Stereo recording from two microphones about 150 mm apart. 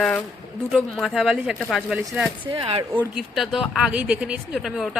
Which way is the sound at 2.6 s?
40° right (ahead or behind).